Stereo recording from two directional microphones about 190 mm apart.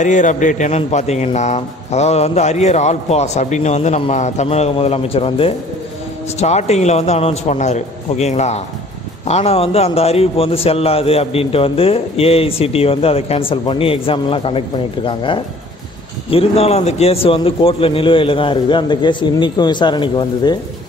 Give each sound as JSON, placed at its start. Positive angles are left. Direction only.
{"t": 0.0, "sound": "a man's voice", "side_deg": 40}